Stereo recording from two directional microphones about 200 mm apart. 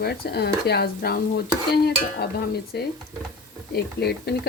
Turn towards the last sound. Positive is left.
turn(degrees=55)  # may be behind; listen again after turning